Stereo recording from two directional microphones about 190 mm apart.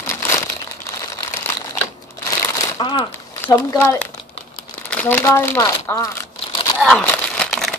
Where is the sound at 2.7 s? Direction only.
25° left (ahead or behind).